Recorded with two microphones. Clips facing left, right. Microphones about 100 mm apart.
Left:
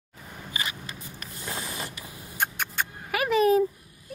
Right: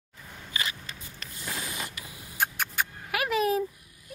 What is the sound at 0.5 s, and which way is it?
Vehicle, 20° left (ahead or behind).